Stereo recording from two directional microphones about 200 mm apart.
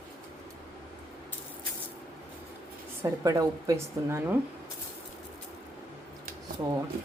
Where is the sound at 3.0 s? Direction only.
15° right (ahead or behind).